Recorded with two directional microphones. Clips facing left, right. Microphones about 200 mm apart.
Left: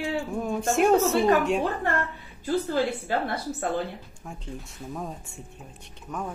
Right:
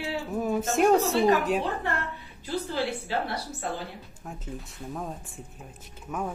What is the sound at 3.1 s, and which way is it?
Speech, 50° left (ahead or behind).